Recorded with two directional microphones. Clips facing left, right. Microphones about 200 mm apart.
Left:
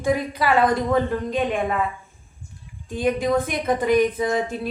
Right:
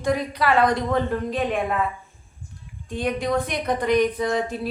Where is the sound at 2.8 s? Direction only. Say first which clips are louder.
Left 3 dB; centre (ahead or behind).